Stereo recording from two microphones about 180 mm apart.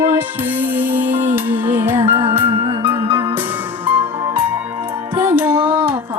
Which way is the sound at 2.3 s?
10° right (ahead or behind).